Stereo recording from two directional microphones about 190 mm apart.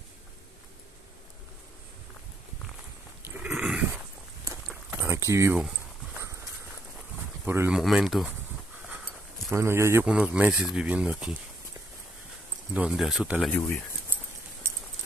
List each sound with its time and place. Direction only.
3.3 s a sound: 5° right (ahead or behind)
6.1 s clip-clop: 15° right (ahead or behind)
7.4 s speech: 10° right (ahead or behind)
12.7 s speech: 5° right (ahead or behind)
13.5 s speech: 10° left (ahead or behind)